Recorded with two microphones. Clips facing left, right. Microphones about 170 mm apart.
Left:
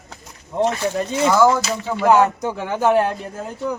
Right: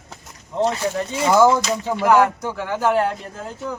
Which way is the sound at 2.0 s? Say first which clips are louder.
Left 1 dB; 20° left (ahead or behind).